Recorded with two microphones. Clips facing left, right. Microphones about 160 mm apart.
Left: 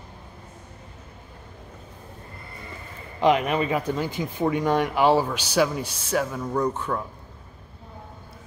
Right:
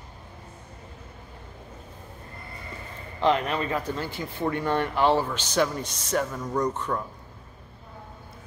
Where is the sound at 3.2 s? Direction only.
15° left (ahead or behind).